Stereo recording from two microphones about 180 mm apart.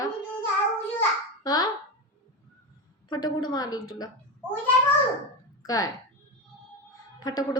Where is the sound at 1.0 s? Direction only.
20° left (ahead or behind).